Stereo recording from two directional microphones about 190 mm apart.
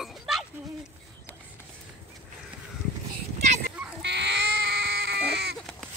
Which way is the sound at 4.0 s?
65° right (ahead or behind).